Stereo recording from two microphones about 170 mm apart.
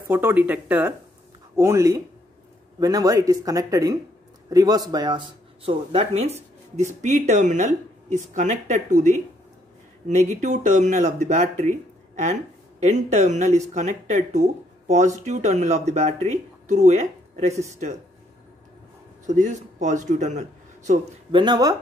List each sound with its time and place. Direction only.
0.0 s speech: 10° right (ahead or behind); by 11.7 s 40° right (ahead or behind)
12.8 s speech: 45° right (ahead or behind)
19.2 s a man's voice: 45° right (ahead or behind)
21.3 s speech: 25° right (ahead or behind)